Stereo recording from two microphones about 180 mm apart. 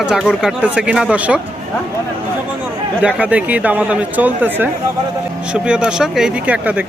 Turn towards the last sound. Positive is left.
turn(degrees=-10)  # may be behind; listen again after turning